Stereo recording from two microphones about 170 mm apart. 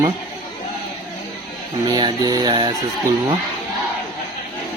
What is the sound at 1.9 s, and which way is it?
Speech, 25° right (ahead or behind).